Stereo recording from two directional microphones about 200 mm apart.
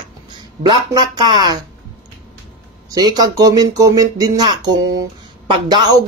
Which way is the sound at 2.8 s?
20° right (ahead or behind).